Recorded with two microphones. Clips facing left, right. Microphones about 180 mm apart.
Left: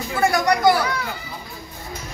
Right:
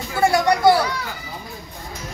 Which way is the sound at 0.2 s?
25° right (ahead or behind).